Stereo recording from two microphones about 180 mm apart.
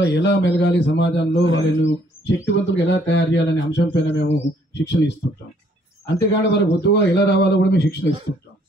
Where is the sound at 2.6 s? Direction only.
85° left.